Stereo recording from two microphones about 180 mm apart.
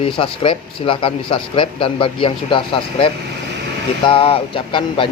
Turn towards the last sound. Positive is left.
turn(degrees=30)  # may be behind; listen again after turning